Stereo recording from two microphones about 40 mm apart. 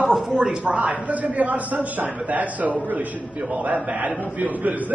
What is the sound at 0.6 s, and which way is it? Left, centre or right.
A man's voice, right.